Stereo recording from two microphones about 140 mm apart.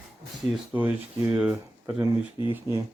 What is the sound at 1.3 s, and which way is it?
Speech, 15° right (ahead or behind).